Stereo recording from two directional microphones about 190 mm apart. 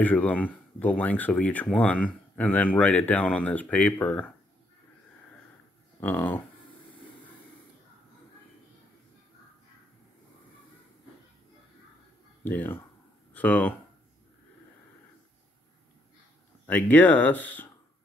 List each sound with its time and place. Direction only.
0.0 s speech: 10° left (ahead or behind)
5.9 s speech: 10° left (ahead or behind)
12.4 s speech: 10° left (ahead or behind)
16.9 s speech: 10° left (ahead or behind)